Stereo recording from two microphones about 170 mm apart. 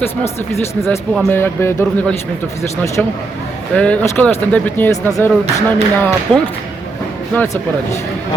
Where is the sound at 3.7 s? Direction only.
5° left (ahead or behind).